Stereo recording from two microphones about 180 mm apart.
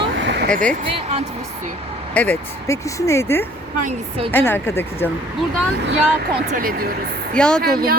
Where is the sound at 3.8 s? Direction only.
35° right (ahead or behind).